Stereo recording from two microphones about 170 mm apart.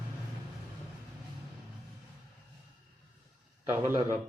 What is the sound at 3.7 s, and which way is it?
Speech, 15° right (ahead or behind).